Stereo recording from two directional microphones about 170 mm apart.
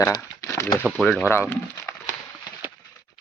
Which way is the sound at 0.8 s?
5° left (ahead or behind).